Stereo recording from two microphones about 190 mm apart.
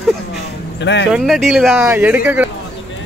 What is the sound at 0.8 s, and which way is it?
Speech, 70° left (ahead or behind).